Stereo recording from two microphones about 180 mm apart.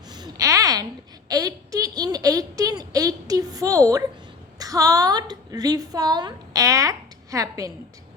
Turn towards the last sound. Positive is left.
turn(degrees=-20)  # may be behind; listen again after turning